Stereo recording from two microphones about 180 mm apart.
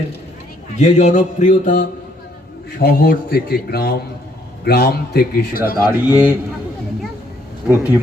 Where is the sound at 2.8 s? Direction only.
55° left (ahead or behind).